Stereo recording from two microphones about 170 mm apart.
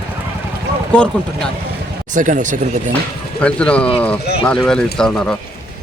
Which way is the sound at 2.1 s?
50° right (ahead or behind).